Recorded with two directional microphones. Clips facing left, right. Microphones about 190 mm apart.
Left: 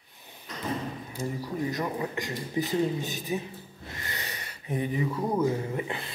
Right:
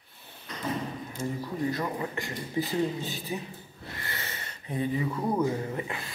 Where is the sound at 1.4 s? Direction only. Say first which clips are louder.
Even; 15° left (ahead or behind).